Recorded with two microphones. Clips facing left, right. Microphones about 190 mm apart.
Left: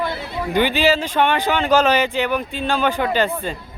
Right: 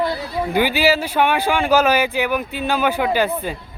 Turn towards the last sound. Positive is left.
turn(degrees=-10)  # may be behind; listen again after turning